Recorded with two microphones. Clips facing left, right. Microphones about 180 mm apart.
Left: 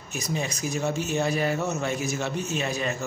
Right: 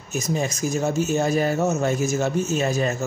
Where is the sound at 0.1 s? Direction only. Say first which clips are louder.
Right 5 dB; 45° right (ahead or behind).